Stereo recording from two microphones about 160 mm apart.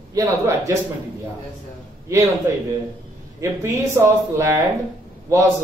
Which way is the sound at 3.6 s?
15° right (ahead or behind).